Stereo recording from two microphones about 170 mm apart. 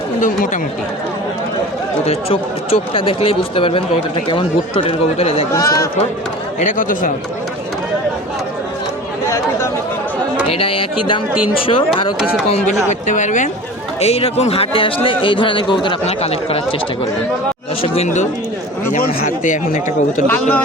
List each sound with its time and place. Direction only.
0.2 s speech: 50° left (ahead or behind)
2.0 s speech: 35° left (ahead or behind)
5.5 s a man's voice: 20° left (ahead or behind)
6.6 s speech: 50° left (ahead or behind)
10.5 s speech: 35° left (ahead or behind)
12.6 s speech: 45° left (ahead or behind)
17.8 s speech: 35° left (ahead or behind)
20.2 s speech: 10° left (ahead or behind)